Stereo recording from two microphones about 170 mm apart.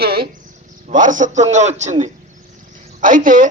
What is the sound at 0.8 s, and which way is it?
A woman's voice, 50° right (ahead or behind).